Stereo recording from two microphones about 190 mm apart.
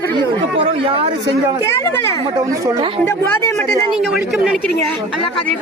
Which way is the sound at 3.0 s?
15° left (ahead or behind).